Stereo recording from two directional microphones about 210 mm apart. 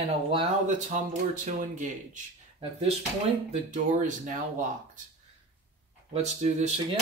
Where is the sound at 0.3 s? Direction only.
35° right (ahead or behind).